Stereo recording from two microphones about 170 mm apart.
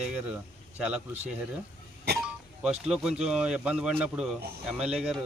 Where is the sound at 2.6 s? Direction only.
5° right (ahead or behind).